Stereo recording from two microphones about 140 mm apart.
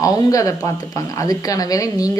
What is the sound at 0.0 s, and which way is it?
A man's voice, 25° left (ahead or behind).